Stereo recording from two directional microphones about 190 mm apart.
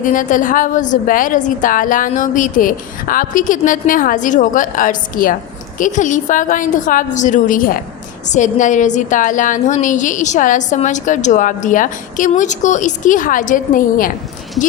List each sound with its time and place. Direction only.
0.0 s a woman's voice: 45° left (ahead or behind)